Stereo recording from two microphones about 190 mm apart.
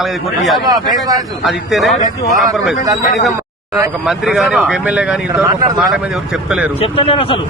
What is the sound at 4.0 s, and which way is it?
Speech, centre (ahead or behind).